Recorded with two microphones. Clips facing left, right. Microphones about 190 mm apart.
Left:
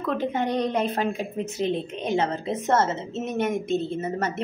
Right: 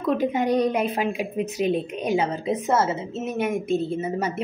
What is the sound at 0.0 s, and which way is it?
A woman's voice, 10° right (ahead or behind).